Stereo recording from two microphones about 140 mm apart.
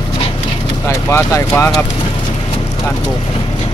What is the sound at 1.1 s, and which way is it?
Speech, 20° left (ahead or behind).